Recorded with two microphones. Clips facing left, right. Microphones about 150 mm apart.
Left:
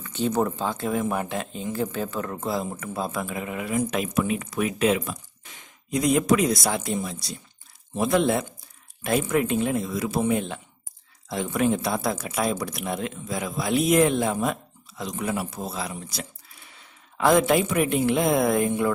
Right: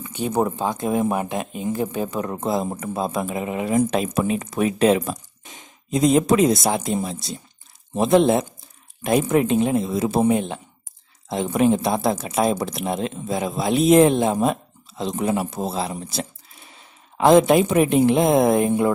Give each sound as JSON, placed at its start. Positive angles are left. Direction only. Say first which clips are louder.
{"t": 0.0, "sound": "speech", "louder": "right 2 dB", "side_deg": -15}
{"t": 3.7, "sound": "speech", "louder": "right 4 dB", "side_deg": -40}
{"t": 5.4, "sound": "speech", "louder": "right 5 dB", "side_deg": -20}